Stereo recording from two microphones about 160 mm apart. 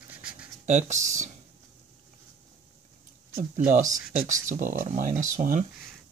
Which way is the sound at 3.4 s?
55° right (ahead or behind).